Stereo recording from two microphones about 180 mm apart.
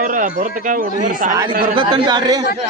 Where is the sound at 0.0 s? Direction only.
50° right (ahead or behind).